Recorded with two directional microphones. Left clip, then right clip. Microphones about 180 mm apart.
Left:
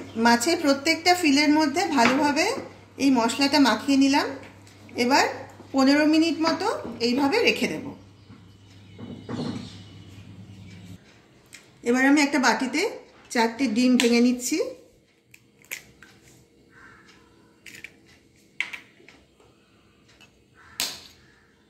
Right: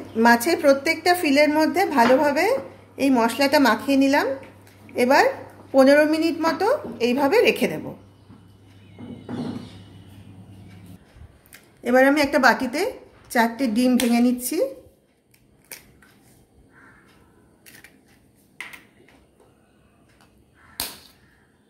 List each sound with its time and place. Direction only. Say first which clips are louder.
0.2 s a woman's voice: right 4 dB; 65° right (ahead or behind)
11.5 s a woman's voice: right 6 dB; 60° right (ahead or behind)